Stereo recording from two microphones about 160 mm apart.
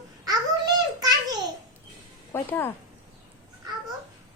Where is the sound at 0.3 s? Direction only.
25° right (ahead or behind).